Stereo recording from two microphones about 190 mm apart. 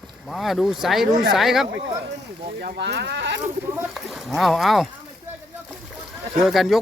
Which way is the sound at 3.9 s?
Centre (ahead or behind).